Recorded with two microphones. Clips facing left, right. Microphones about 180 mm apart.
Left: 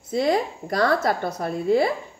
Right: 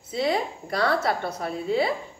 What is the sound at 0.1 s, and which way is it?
Speech, 45° left (ahead or behind).